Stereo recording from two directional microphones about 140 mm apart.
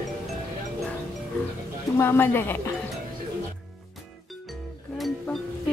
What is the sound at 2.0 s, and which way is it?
Speech, 15° left (ahead or behind).